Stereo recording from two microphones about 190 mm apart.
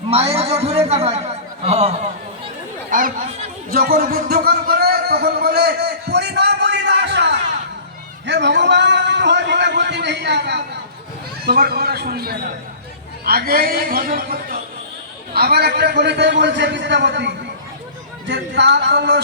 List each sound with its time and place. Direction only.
0.1 s a man's voice: 30° right (ahead or behind)
2.9 s chatter: 40° right (ahead or behind)
3.7 s music: 50° right (ahead or behind)
8.3 s a sound: 65° right (ahead or behind)
11.4 s a man's voice: 60° right (ahead or behind)